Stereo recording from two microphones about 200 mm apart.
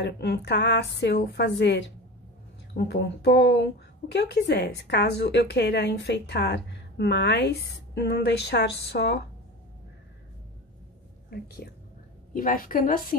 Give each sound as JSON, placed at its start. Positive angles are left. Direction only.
{"t": 0.0, "sound": "a woman's voice", "side_deg": 55}
{"t": 11.2, "sound": "a woman's voice", "side_deg": 50}